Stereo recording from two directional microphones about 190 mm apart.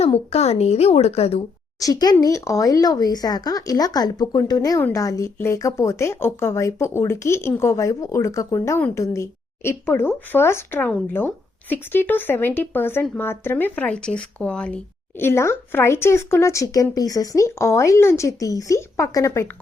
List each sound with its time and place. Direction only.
0.0 s speech: 30° left (ahead or behind)
1.8 s speech: 20° left (ahead or behind)